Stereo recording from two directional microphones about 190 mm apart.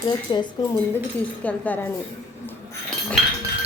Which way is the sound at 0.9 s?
10° left (ahead or behind).